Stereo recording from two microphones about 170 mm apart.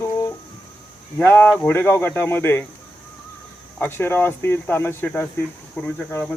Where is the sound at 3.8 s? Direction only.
15° left (ahead or behind).